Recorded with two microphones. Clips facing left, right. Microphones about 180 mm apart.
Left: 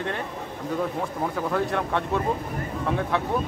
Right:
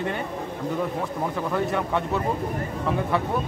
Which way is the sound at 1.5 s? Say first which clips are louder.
Right 2 dB; 5° right (ahead or behind).